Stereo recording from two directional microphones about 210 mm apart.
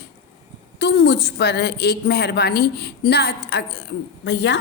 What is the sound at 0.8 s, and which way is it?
A woman's voice, 50° left (ahead or behind).